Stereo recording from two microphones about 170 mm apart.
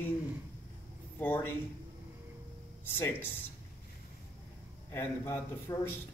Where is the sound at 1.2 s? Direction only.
10° left (ahead or behind).